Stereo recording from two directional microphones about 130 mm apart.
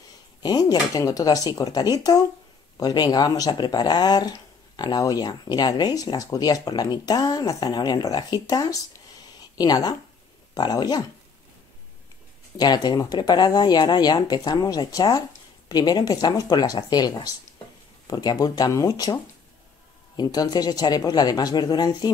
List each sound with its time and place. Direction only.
0.4 s speech: 30° left (ahead or behind)
12.5 s speech: 30° left (ahead or behind)
20.2 s speech: 30° left (ahead or behind)